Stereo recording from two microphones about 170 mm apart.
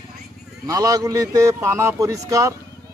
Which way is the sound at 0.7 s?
20° right (ahead or behind).